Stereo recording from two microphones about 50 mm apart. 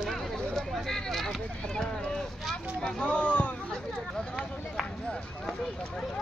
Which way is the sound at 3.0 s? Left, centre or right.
Left.